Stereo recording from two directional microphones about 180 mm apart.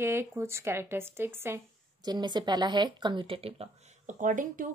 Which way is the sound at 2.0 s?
25° right (ahead or behind).